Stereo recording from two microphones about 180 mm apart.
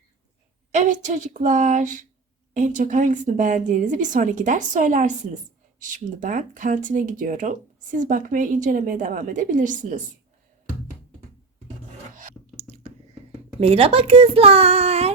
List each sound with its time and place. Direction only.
0.7 s a woman's voice: 40° right (ahead or behind)
12.1 s a sound: 40° right (ahead or behind)
13.6 s a child's voice: 35° right (ahead or behind)